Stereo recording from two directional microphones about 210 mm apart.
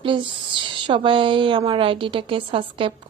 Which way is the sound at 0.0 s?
25° right (ahead or behind).